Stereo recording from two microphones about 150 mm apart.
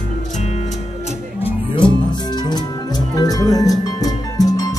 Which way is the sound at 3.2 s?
25° left (ahead or behind).